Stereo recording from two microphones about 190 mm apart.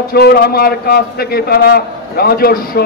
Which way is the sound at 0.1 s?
55° left (ahead or behind).